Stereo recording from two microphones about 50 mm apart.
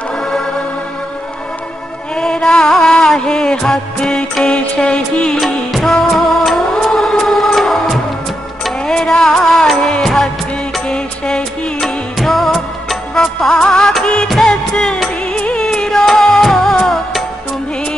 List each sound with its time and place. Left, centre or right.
2.1 s music: centre
4.5 s music: left
5.4 s music: centre
11.8 s music: centre
13.1 s music: centre